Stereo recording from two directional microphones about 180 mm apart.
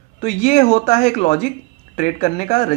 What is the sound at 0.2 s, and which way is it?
Speech, 40° left (ahead or behind).